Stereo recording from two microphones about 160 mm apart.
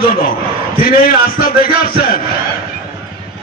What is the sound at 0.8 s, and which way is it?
Speech, 65° left (ahead or behind).